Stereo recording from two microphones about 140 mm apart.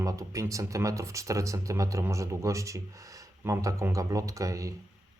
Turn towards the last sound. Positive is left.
turn(degrees=-25)  # may be behind; listen again after turning